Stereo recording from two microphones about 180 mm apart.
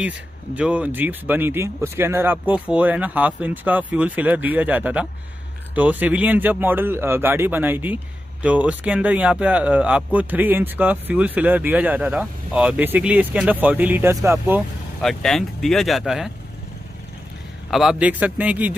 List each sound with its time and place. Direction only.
0.6 s speech: 10° right (ahead or behind)
15.0 s speech: centre (ahead or behind)
17.6 s speech: centre (ahead or behind)